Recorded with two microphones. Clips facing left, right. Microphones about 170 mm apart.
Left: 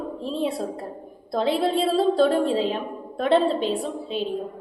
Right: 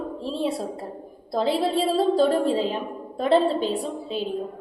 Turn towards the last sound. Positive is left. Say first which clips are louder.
# left 1 dB
turn(degrees=0)  # may be behind; listen again after turning